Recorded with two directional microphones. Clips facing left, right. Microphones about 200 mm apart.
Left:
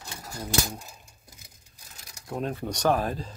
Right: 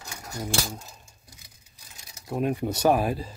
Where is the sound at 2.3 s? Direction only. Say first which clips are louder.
Right 4 dB; 10° right (ahead or behind).